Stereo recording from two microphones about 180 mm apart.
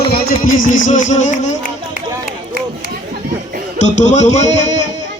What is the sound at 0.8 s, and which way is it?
Speech, 45° left (ahead or behind).